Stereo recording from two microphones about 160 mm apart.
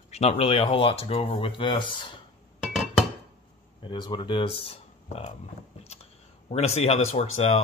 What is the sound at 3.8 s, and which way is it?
Speech, 30° left (ahead or behind).